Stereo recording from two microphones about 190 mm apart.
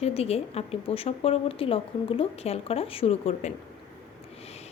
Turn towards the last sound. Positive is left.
turn(degrees=35)  # may be behind; listen again after turning